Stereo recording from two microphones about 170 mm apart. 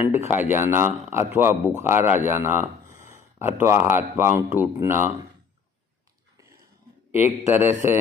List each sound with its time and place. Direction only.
0.0 s speech: 15° right (ahead or behind)
7.2 s speech: 10° right (ahead or behind)